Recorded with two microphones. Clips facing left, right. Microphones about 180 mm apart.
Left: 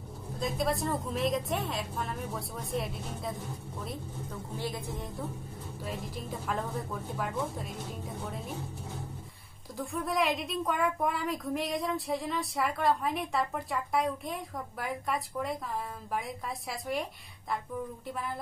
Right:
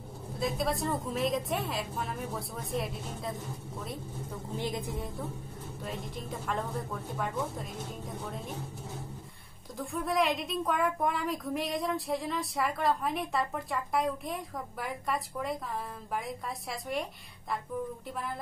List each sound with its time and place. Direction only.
0.4 s speech: centre (ahead or behind)
4.6 s a woman's voice: 20° right (ahead or behind)
5.8 s speech: centre (ahead or behind)
9.8 s speech: centre (ahead or behind)